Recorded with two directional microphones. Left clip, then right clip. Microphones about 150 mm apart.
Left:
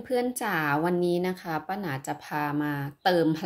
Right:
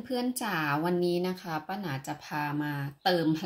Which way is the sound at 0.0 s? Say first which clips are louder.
Left 5 dB; 25° left (ahead or behind).